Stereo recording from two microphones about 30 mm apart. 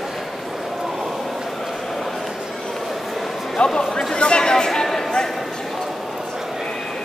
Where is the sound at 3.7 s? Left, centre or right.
Left.